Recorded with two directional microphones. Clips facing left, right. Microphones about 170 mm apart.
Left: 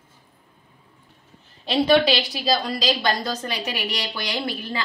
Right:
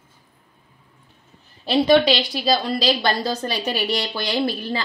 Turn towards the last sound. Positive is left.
turn(degrees=-35)  # may be behind; listen again after turning